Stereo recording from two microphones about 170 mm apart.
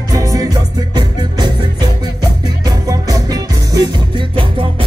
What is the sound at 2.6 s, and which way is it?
Music, 20° right (ahead or behind).